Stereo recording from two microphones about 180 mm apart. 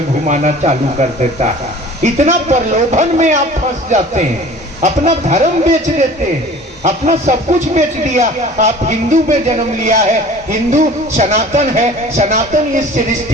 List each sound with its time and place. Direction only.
0.3 s a man's voice: 40° right (ahead or behind)